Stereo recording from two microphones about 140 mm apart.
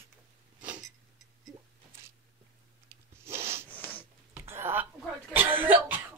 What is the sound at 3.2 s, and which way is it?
Rub, 20° right (ahead or behind).